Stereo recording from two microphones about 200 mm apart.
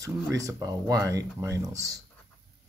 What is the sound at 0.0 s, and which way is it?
Speech, 15° right (ahead or behind).